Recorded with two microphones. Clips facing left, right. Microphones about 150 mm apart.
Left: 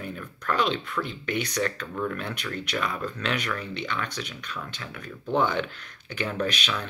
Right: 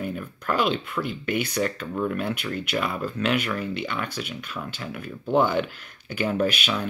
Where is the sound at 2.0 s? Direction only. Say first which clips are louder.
Right 5 dB; 15° right (ahead or behind).